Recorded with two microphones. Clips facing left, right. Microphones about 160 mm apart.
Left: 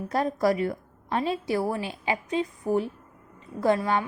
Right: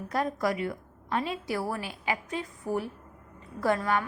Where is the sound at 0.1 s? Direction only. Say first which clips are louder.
Left 4 dB; 30° left (ahead or behind).